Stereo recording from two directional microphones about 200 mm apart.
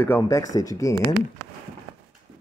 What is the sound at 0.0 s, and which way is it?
Speech, 15° left (ahead or behind).